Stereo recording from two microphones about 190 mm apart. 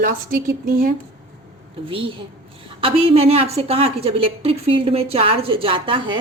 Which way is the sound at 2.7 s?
30° right (ahead or behind).